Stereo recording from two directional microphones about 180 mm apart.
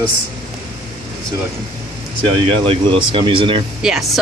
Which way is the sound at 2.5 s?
30° right (ahead or behind).